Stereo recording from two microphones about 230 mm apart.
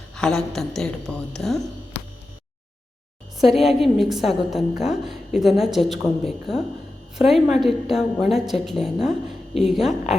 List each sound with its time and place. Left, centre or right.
0.1 s a woman's voice: centre
3.3 s a woman's voice: centre